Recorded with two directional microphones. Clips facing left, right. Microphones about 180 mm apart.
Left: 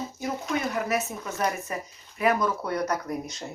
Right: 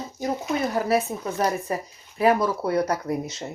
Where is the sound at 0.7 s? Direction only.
35° right (ahead or behind).